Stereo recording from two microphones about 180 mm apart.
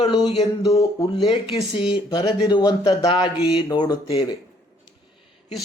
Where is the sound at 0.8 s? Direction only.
25° left (ahead or behind).